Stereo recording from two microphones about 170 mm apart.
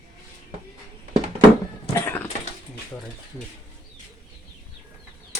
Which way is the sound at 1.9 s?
15° left (ahead or behind).